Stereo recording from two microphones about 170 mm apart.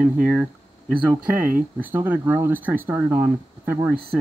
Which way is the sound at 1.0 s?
10° right (ahead or behind).